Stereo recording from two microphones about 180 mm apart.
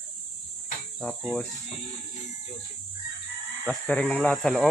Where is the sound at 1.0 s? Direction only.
Centre (ahead or behind).